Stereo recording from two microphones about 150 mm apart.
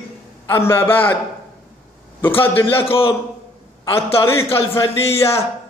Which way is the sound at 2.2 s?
15° left (ahead or behind).